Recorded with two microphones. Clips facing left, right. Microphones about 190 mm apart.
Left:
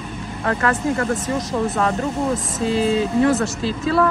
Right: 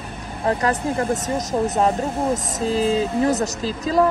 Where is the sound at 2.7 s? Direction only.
40° right (ahead or behind).